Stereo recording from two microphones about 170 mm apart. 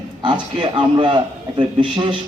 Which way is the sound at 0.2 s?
30° right (ahead or behind).